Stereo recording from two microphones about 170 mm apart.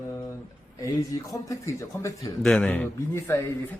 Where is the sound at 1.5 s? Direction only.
20° left (ahead or behind).